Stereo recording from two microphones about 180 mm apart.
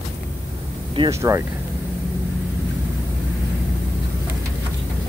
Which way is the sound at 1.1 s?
15° right (ahead or behind).